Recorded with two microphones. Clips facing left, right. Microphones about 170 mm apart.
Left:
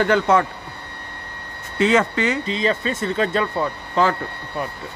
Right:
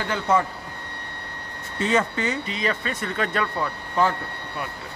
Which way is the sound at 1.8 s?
90° left.